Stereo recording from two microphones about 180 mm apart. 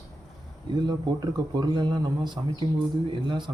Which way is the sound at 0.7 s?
25° right (ahead or behind).